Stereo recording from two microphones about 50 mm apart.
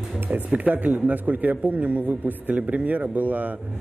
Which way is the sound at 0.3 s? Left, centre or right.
Right.